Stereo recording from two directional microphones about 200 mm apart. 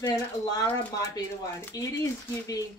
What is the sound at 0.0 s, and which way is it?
Speech, 20° left (ahead or behind).